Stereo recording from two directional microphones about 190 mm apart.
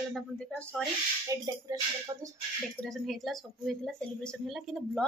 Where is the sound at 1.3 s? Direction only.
15° right (ahead or behind).